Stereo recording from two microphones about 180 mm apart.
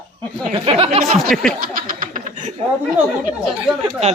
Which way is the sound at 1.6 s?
50° right (ahead or behind).